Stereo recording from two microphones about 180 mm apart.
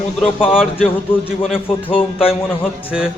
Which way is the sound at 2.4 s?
10° left (ahead or behind).